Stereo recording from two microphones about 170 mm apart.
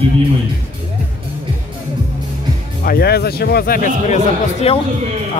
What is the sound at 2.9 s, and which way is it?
Speech, 70° left (ahead or behind).